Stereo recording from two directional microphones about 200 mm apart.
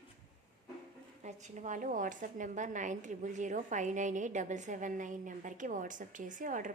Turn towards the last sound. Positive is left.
turn(degrees=-40)  # may be behind; listen again after turning